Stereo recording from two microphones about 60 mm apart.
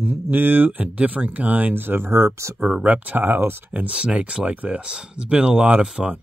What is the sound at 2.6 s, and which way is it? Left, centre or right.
Speech, right.